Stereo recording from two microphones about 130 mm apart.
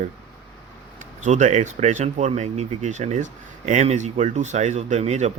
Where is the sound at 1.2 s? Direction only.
65° right (ahead or behind).